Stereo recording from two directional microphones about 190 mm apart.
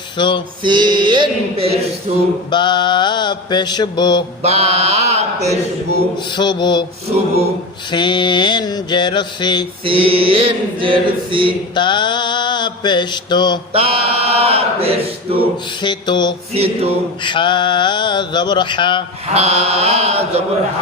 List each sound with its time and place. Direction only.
0.2 s mantra: 25° left (ahead or behind)
0.6 s mantra: 25° right (ahead or behind)
2.5 s mantra: 25° left (ahead or behind)
4.4 s chant: 35° right (ahead or behind)
6.1 s mantra: 25° left (ahead or behind)
7.9 s mantra: 25° left (ahead or behind)
9.8 s mantra: 25° right (ahead or behind)
11.7 s mantra: 25° left (ahead or behind)
13.7 s chant: 30° right (ahead or behind)
15.3 s mantra: 30° right (ahead or behind)
15.8 s a sound: 25° left (ahead or behind)
16.5 s chant: 30° right (ahead or behind)
17.2 s mantra: 25° left (ahead or behind)
19.3 s chant: 30° right (ahead or behind)